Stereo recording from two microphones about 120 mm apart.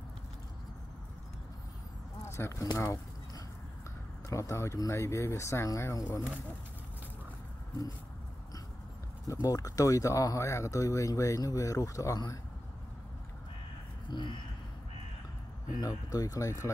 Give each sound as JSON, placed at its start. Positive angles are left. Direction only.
{"t": 2.2, "sound": "a sound", "side_deg": 20}
{"t": 4.3, "sound": "speech", "side_deg": 25}
{"t": 9.3, "sound": "speech", "side_deg": 30}
{"t": 14.1, "sound": "speech", "side_deg": 40}
{"t": 15.8, "sound": "speech", "side_deg": 30}